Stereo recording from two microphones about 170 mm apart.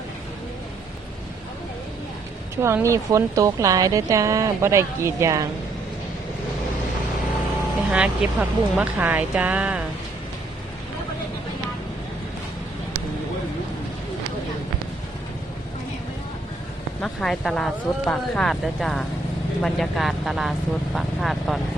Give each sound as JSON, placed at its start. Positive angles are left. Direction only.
{"t": 2.6, "sound": "speech", "side_deg": -15}
{"t": 7.9, "sound": "speech", "side_deg": -10}
{"t": 17.0, "sound": "speech", "side_deg": 0}